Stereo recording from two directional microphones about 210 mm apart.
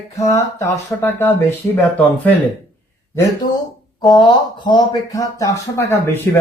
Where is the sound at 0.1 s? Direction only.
15° left (ahead or behind).